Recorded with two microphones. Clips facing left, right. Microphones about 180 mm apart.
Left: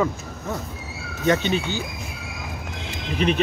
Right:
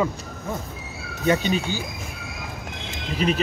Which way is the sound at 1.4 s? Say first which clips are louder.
Even; 40° right (ahead or behind).